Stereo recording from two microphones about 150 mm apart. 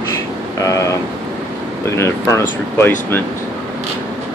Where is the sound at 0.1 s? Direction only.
20° left (ahead or behind).